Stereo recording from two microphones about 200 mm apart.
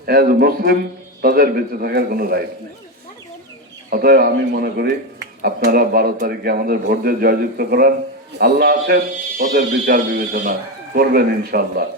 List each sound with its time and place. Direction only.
0.0 s speech: 50° right (ahead or behind)
3.8 s speech: 50° right (ahead or behind)